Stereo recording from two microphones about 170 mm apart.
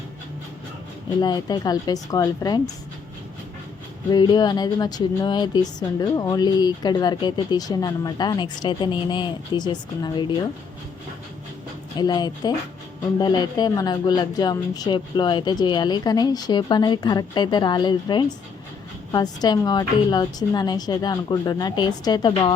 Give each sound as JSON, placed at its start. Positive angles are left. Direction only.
{"t": 1.2, "sound": "speech", "side_deg": 25}
{"t": 4.1, "sound": "speech", "side_deg": 25}
{"t": 11.9, "sound": "speech", "side_deg": 25}